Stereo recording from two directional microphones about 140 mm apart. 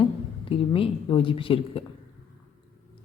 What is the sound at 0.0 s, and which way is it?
A woman's voice, 40° left (ahead or behind).